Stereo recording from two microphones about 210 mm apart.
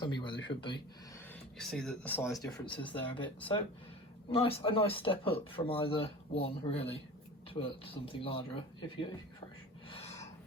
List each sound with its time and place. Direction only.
0.0 s a sound: 20° left (ahead or behind)
1.5 s speech: centre (ahead or behind)
4.3 s speech: 25° left (ahead or behind)